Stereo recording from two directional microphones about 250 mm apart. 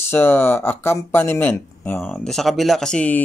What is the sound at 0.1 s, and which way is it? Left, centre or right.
Speech, centre.